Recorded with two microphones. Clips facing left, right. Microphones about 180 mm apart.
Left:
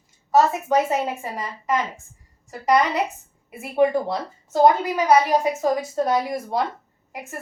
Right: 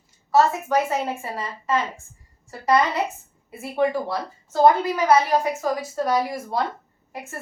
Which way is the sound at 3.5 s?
15° left (ahead or behind).